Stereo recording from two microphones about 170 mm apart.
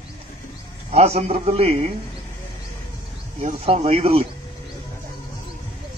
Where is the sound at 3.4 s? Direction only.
40° right (ahead or behind).